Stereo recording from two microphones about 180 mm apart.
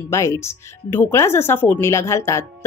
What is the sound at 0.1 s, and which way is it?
A woman's voice, 15° left (ahead or behind).